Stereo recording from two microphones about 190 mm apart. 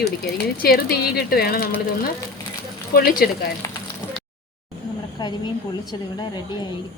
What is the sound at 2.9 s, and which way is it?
Speech, 50° left (ahead or behind).